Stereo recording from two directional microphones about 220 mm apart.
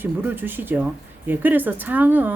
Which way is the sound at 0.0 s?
10° right (ahead or behind).